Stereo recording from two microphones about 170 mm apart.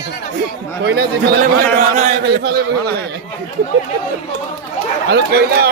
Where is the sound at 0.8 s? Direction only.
70° right (ahead or behind).